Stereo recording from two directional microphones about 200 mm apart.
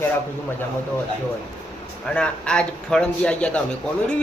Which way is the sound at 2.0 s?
5° left (ahead or behind).